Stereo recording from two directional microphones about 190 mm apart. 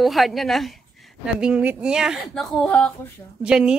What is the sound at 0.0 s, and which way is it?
Speech, centre (ahead or behind).